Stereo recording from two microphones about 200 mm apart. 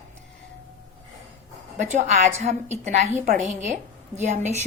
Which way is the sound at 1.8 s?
35° right (ahead or behind).